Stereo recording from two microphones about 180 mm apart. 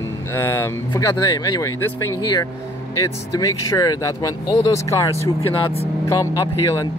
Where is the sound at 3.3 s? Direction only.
20° left (ahead or behind).